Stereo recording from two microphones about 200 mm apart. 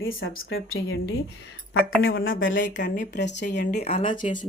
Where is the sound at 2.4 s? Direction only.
65° left (ahead or behind).